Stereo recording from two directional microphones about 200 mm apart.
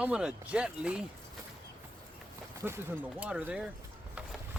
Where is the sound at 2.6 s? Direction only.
10° right (ahead or behind).